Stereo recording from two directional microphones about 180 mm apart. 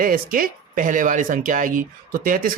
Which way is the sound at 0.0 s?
50° right (ahead or behind).